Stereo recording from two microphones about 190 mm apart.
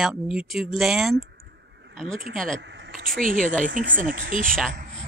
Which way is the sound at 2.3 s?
5° left (ahead or behind).